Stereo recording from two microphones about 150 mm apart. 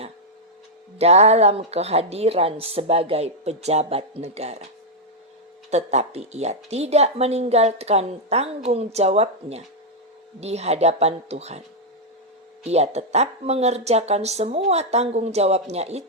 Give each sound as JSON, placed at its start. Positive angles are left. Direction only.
{"t": 0.9, "sound": "speech", "side_deg": -45}
{"t": 5.7, "sound": "speech", "side_deg": -45}
{"t": 12.6, "sound": "speech", "side_deg": -45}